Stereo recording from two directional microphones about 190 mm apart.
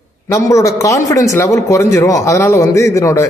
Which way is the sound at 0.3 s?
15° left (ahead or behind).